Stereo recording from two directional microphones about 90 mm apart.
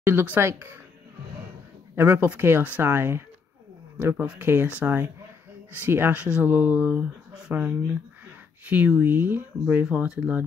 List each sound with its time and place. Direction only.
0.0 s speech: 20° right (ahead or behind)
2.0 s speech: 25° right (ahead or behind)
9.8 s speech: 10° right (ahead or behind)